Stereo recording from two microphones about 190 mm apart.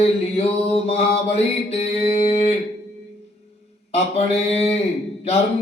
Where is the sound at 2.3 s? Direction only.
35° left (ahead or behind).